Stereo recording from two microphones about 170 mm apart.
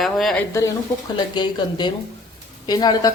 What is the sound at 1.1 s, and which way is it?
A woman's voice, 25° left (ahead or behind).